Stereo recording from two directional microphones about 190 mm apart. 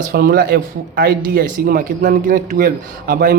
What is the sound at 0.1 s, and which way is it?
Speech, 50° right (ahead or behind).